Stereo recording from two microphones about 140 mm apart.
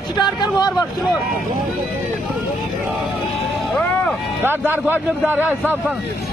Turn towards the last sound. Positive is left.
turn(degrees=-15)  # may be behind; listen again after turning